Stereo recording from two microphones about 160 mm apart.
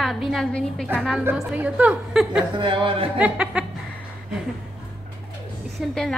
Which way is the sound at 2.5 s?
30° right (ahead or behind).